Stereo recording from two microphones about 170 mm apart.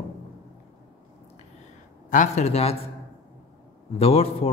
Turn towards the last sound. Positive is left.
turn(degrees=35)  # may be behind; listen again after turning